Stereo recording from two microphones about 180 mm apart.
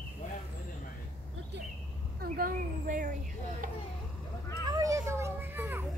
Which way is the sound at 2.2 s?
55° right (ahead or behind).